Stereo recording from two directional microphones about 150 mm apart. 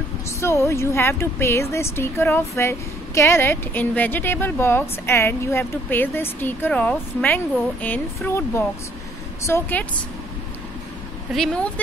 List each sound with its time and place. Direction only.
0.4 s speech: 15° left (ahead or behind)
11.3 s speech: 5° left (ahead or behind)